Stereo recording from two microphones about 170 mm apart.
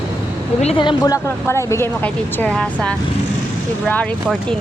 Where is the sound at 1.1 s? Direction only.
15° left (ahead or behind).